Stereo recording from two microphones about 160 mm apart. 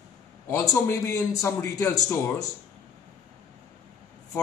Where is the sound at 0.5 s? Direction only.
20° left (ahead or behind).